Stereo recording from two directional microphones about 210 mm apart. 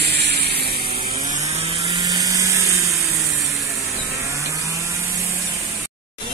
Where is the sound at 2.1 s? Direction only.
15° right (ahead or behind).